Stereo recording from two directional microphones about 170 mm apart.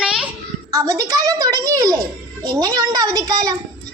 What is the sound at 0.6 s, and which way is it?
A child's voice, 20° right (ahead or behind).